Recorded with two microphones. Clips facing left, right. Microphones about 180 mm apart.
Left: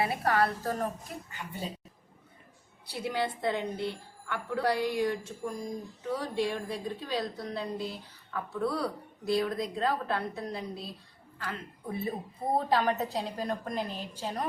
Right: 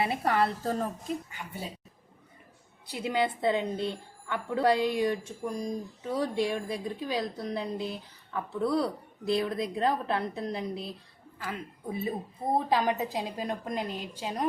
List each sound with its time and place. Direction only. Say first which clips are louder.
0.0 s a woman's voice: right 1 dB; 25° right (ahead or behind)
2.9 s a woman's voice: right 3 dB; 15° right (ahead or behind)